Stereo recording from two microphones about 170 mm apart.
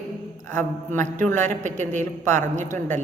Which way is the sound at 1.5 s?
45° right (ahead or behind).